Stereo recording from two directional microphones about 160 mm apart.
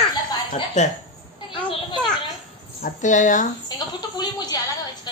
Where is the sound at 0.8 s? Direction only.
45° left (ahead or behind).